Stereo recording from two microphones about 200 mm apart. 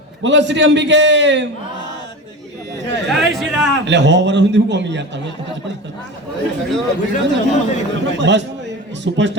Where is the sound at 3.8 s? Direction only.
60° right (ahead or behind).